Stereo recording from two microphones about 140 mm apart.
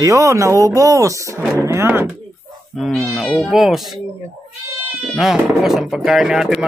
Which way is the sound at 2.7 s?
Centre (ahead or behind).